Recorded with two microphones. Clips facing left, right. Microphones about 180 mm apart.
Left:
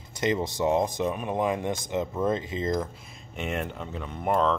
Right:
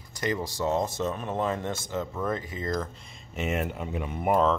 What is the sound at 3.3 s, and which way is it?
Speech, 5° right (ahead or behind).